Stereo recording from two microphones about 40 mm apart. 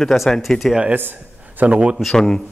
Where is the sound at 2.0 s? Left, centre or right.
Centre.